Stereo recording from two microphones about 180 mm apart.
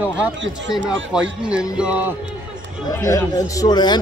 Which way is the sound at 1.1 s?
5° right (ahead or behind).